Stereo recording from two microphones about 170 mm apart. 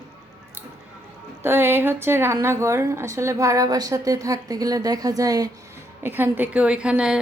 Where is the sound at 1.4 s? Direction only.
15° right (ahead or behind).